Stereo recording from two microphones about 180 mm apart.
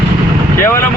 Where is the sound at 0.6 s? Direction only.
15° left (ahead or behind).